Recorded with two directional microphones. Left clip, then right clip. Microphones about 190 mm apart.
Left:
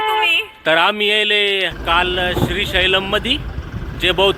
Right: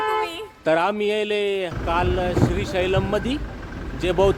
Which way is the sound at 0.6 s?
Centre (ahead or behind).